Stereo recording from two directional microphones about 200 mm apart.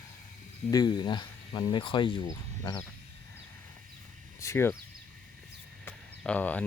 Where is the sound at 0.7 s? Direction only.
20° left (ahead or behind).